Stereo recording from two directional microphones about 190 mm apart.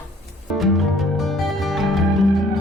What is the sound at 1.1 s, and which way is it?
Music, centre (ahead or behind).